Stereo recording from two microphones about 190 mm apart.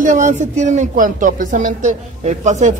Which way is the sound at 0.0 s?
40° right (ahead or behind).